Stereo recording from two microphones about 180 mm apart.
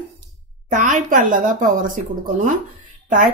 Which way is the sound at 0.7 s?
45° right (ahead or behind).